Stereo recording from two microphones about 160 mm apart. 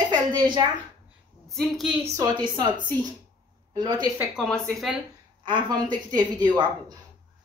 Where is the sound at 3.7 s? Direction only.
25° right (ahead or behind).